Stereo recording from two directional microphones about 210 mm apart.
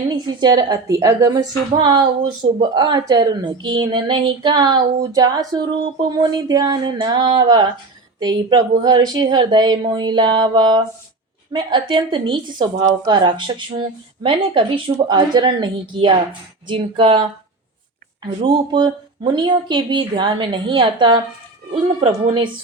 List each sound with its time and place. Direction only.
0.1 s speech: 20° right (ahead or behind)
18.4 s speech: 20° right (ahead or behind)